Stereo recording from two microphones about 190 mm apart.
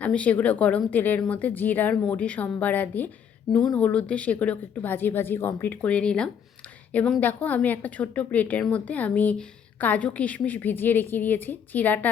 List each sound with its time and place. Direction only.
0.0 s a woman's voice: 5° left (ahead or behind)